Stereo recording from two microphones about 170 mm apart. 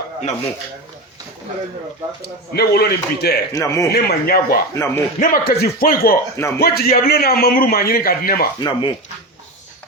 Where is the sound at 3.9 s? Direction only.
65° left (ahead or behind).